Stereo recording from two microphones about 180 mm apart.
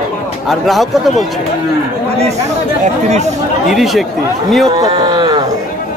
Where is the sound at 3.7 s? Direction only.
Centre (ahead or behind).